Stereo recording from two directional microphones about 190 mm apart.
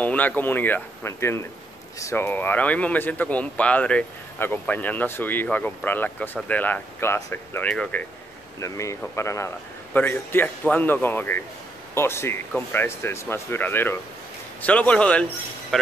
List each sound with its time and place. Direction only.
0.0 s speech: 5° left (ahead or behind)
8.5 s speech: 15° left (ahead or behind)